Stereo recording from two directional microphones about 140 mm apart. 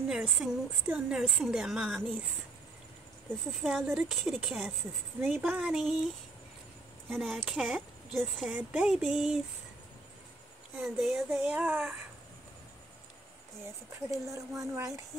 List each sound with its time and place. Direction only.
0.1 s a woman's voice: 5° right (ahead or behind)
3.6 s a woman's voice: centre (ahead or behind)
7.1 s a woman's voice: centre (ahead or behind)
10.8 s a woman's voice: centre (ahead or behind)
13.7 s speech: 20° right (ahead or behind)